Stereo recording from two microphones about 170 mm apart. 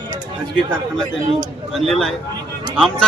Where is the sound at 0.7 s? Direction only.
5° left (ahead or behind).